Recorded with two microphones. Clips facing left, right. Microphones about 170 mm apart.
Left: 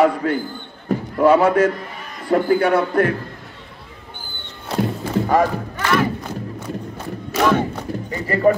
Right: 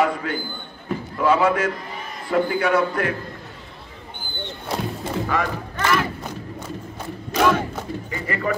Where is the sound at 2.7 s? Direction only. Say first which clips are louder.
Left 4 dB; 50° left (ahead or behind).